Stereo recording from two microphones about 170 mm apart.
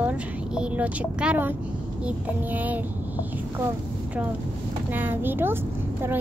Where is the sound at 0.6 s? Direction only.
5° right (ahead or behind).